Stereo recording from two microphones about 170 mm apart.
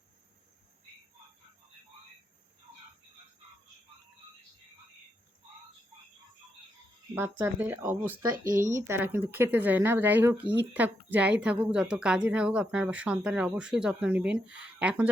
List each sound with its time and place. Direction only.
7.1 s a woman's voice: 10° right (ahead or behind)
8.4 s speech: 50° right (ahead or behind)
8.7 s a woman's voice: 15° right (ahead or behind)